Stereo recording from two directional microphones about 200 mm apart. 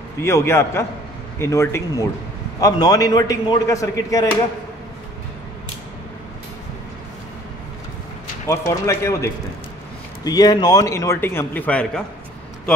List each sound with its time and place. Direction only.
0.2 s a man's voice: 15° left (ahead or behind)
8.5 s a man's voice: 15° left (ahead or behind)